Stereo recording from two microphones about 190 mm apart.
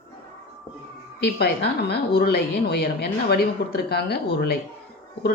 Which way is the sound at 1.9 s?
55° left (ahead or behind).